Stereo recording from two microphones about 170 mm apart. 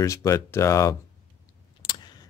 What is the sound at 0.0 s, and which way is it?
Speech, 20° left (ahead or behind).